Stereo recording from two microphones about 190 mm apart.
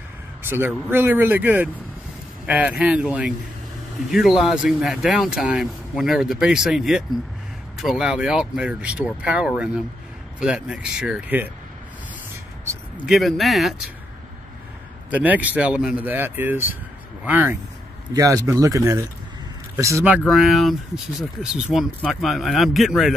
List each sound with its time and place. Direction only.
0.4 s speech: 10° right (ahead or behind)
12.9 s speech: 5° right (ahead or behind)
15.0 s speech: 10° right (ahead or behind)